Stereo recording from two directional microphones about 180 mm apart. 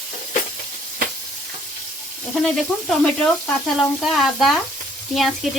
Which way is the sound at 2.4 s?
5° left (ahead or behind).